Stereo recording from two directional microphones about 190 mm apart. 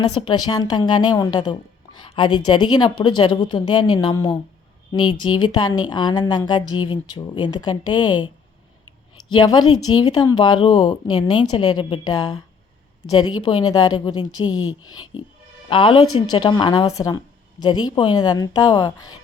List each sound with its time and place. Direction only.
0.2 s a woman's voice: 25° left (ahead or behind)
9.3 s a woman's voice: 20° left (ahead or behind)
14.4 s speech: 90° left
15.7 s a woman's voice: 25° left (ahead or behind)